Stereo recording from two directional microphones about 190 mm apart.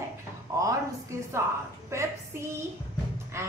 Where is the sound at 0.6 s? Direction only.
15° right (ahead or behind).